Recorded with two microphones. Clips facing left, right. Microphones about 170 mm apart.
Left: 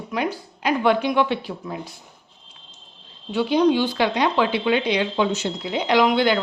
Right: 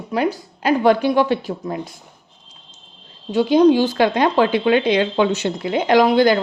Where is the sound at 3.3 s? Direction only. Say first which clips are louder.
Right 5 dB; 45° right (ahead or behind).